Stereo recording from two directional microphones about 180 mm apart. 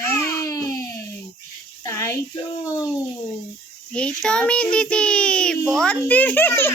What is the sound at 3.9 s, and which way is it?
A child's voice, 5° left (ahead or behind).